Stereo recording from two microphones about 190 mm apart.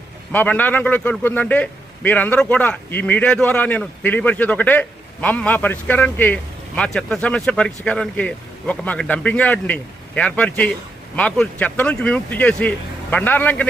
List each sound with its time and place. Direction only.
0.3 s a man's voice: 10° left (ahead or behind)